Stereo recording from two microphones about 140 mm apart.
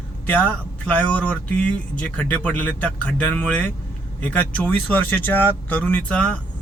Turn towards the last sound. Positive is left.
turn(degrees=10)  # may be behind; listen again after turning